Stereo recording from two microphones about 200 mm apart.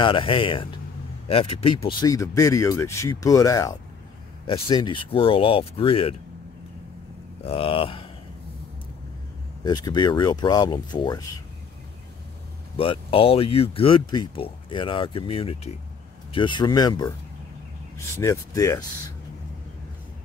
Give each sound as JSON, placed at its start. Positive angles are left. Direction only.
{"t": 0.0, "sound": "speech", "side_deg": 25}
{"t": 7.4, "sound": "speech", "side_deg": 30}
{"t": 9.6, "sound": "speech", "side_deg": 20}
{"t": 12.7, "sound": "speech", "side_deg": 25}